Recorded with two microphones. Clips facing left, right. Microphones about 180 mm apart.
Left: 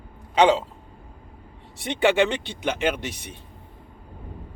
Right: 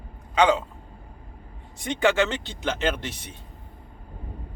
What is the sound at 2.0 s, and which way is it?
Speech, 20° left (ahead or behind).